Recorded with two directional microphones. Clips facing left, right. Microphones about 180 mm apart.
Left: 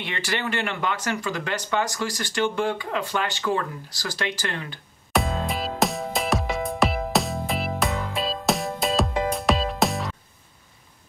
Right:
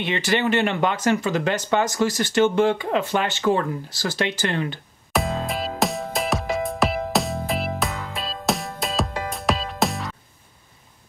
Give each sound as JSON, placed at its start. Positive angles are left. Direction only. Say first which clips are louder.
{"t": 0.0, "sound": "speech", "louder": "right 7 dB", "side_deg": -20}
{"t": 5.1, "sound": "music", "louder": "right 1 dB", "side_deg": 0}